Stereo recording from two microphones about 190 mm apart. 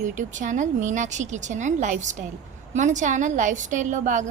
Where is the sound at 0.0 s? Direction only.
40° right (ahead or behind).